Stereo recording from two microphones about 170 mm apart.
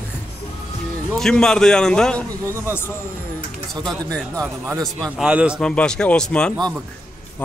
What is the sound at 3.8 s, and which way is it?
A man's voice, centre (ahead or behind).